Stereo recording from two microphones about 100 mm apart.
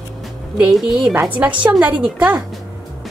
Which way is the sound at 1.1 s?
15° right (ahead or behind).